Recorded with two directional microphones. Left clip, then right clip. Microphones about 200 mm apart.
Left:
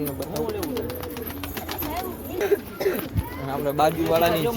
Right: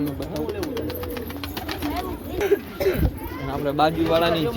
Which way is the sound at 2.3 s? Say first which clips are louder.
Right 1 dB; 15° right (ahead or behind).